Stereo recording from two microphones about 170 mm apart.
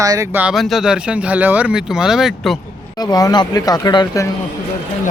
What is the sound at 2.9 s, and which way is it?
Speech, 25° left (ahead or behind).